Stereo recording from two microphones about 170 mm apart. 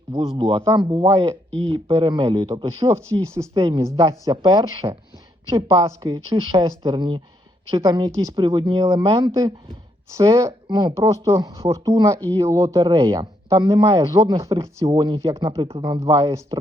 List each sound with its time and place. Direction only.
0.1 s speech: 20° right (ahead or behind)